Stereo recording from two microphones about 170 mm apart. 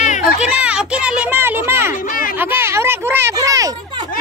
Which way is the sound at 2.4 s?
10° right (ahead or behind).